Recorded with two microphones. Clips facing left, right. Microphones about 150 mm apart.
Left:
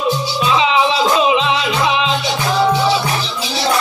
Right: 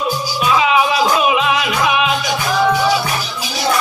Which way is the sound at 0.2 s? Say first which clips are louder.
Even; 25° left (ahead or behind).